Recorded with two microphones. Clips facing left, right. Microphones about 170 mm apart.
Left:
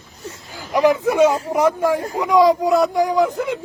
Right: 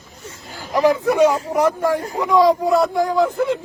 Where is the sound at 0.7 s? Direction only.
20° left (ahead or behind).